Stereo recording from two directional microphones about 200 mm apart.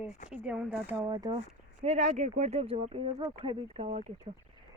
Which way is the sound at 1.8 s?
35° right (ahead or behind).